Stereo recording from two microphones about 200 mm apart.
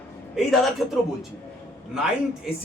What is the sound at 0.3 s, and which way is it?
Speech, centre (ahead or behind).